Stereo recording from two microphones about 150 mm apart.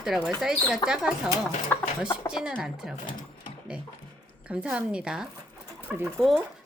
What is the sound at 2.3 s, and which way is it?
Speech, 5° right (ahead or behind).